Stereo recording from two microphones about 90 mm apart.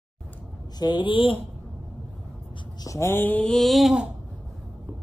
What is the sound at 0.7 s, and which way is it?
Speech, 55° left (ahead or behind).